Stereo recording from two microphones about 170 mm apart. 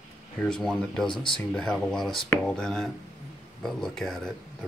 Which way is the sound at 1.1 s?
30° left (ahead or behind).